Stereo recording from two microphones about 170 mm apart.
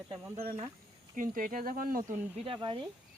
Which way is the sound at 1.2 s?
55° right (ahead or behind).